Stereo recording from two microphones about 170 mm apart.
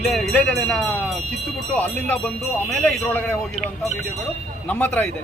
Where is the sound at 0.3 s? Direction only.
10° left (ahead or behind).